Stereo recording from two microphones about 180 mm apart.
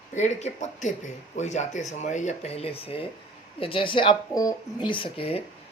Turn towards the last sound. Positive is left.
turn(degrees=30)  # may be behind; listen again after turning